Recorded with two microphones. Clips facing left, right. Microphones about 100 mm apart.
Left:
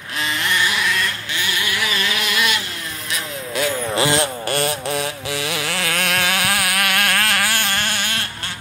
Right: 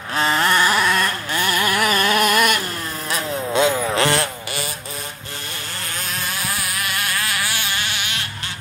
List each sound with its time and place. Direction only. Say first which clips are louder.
0.1 s carnatic music: right 5 dB; 40° right (ahead or behind)
3.5 s vehicle: right 4 dB; 25° right (ahead or behind)
4.5 s vehicle: left 8 dB; 60° left (ahead or behind)